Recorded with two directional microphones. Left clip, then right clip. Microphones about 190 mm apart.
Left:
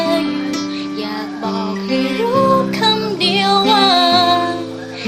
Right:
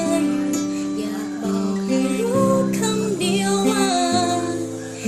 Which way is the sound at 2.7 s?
20° right (ahead or behind).